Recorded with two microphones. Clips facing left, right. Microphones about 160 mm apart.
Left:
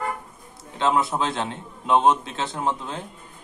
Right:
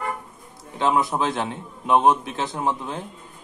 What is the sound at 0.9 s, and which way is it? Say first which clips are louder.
A man's voice: right 1 dB; 15° right (ahead or behind).